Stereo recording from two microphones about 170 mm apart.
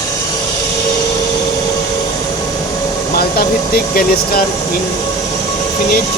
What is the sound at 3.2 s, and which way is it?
Speech, 65° left (ahead or behind).